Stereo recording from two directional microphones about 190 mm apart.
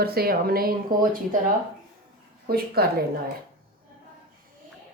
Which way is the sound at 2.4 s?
50° right (ahead or behind).